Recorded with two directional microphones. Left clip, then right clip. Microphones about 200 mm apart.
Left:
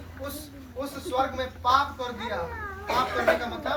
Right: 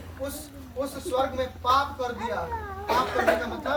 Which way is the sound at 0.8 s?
Centre (ahead or behind).